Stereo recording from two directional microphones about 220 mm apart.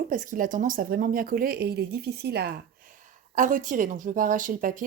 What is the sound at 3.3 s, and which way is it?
Speech, 35° right (ahead or behind).